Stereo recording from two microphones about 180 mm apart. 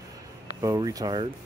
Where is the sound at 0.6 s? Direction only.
20° right (ahead or behind).